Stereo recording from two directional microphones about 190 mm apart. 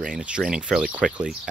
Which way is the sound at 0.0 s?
5° right (ahead or behind).